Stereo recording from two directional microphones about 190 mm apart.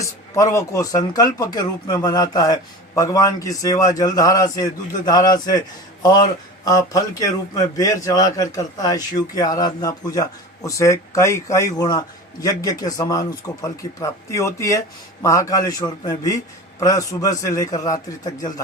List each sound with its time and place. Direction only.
0.3 s a man's voice: 15° left (ahead or behind)